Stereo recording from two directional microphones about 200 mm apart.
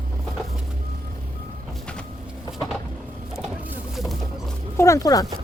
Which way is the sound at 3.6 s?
Centre (ahead or behind).